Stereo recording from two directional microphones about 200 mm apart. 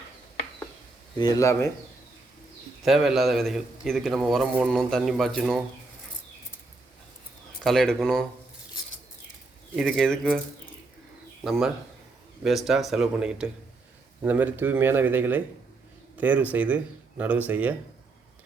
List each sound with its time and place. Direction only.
1.2 s speech: 15° left (ahead or behind)
2.8 s a man's voice: centre (ahead or behind)
7.6 s a man's voice: centre (ahead or behind)
9.7 s a man's voice: centre (ahead or behind)
11.4 s a man's voice: centre (ahead or behind)